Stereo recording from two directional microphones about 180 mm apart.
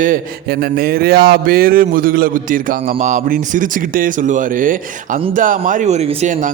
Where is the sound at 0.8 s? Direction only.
55° right (ahead or behind).